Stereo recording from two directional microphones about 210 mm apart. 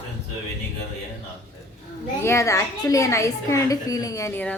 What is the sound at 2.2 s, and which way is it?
A woman's voice, 15° left (ahead or behind).